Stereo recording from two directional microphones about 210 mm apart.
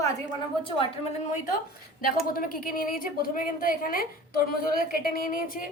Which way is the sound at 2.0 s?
45° left (ahead or behind).